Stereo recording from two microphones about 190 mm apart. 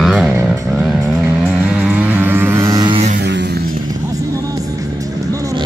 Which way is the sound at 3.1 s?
65° right (ahead or behind).